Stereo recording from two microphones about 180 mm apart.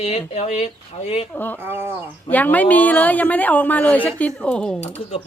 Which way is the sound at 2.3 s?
10° left (ahead or behind).